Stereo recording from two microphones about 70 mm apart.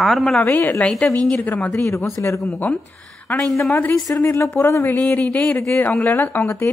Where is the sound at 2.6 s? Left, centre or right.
Left.